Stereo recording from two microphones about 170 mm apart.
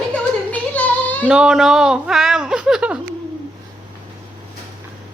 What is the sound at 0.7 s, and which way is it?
Child singing, 10° left (ahead or behind).